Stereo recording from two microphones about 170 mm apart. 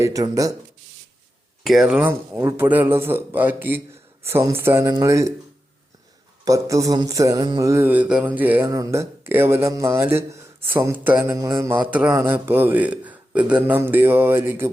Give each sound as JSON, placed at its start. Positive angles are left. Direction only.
{"t": 0.0, "sound": "speech", "side_deg": -20}
{"t": 1.6, "sound": "mantra", "side_deg": 0}
{"t": 6.4, "sound": "mantra", "side_deg": -20}